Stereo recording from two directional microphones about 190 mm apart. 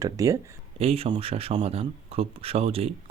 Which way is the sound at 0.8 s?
30° right (ahead or behind).